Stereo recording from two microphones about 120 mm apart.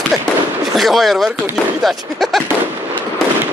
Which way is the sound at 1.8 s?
Centre (ahead or behind).